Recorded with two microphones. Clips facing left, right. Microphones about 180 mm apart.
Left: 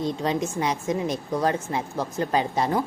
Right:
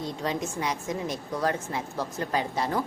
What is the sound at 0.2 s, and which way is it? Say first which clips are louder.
A woman's voice: left 4 dB; 25° left (ahead or behind).